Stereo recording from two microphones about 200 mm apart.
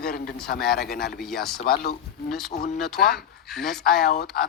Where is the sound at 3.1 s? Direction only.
Centre (ahead or behind).